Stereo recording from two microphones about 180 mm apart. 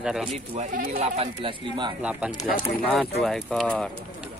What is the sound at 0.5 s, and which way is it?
Speech, 50° right (ahead or behind).